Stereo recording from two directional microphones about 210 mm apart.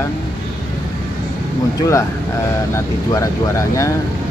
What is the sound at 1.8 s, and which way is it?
Speech, 15° left (ahead or behind).